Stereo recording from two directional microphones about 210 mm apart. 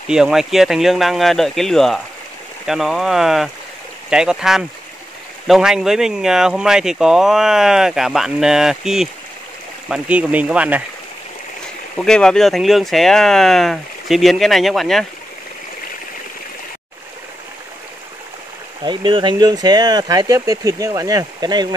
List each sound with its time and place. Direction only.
0.1 s speech: centre (ahead or behind)
12.0 s speech: 5° left (ahead or behind)
18.9 s speech: 20° right (ahead or behind)